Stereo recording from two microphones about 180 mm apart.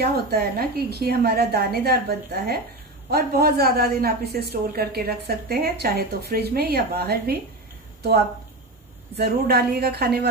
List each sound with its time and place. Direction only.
0.0 s speech: 60° right (ahead or behind)
9.1 s speech: 65° right (ahead or behind)